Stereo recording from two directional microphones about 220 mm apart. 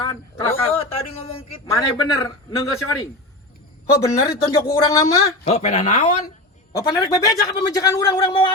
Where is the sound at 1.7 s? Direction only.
15° left (ahead or behind).